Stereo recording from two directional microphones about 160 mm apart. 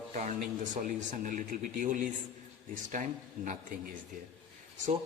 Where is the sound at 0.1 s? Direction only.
50° right (ahead or behind).